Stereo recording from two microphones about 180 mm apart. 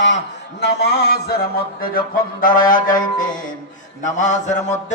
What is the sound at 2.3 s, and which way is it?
Music, 50° left (ahead or behind).